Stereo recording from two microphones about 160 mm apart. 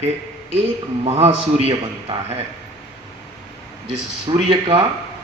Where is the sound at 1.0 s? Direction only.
40° right (ahead or behind).